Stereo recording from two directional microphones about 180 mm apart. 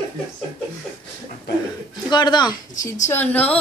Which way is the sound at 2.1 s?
25° left (ahead or behind).